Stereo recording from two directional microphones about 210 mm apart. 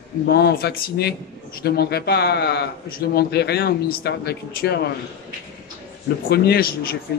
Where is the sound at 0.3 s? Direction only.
50° left (ahead or behind).